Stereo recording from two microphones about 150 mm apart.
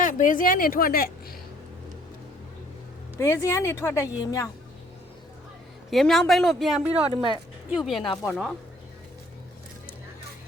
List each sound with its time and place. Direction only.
0.0 s a woman's voice: 60° left (ahead or behind); by 1.4 s 80° left
3.2 s a woman's voice: 15° left (ahead or behind)
5.9 s a woman's voice: centre (ahead or behind)
6.9 s speech: 40° right (ahead or behind)
7.7 s a woman's voice: centre (ahead or behind)